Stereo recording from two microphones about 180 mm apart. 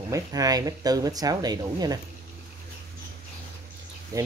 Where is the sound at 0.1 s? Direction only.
20° right (ahead or behind).